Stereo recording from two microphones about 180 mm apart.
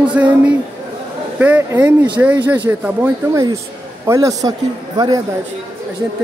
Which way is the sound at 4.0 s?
15° right (ahead or behind).